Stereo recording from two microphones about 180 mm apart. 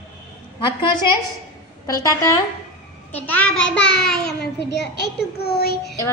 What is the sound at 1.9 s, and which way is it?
Speech, 20° left (ahead or behind).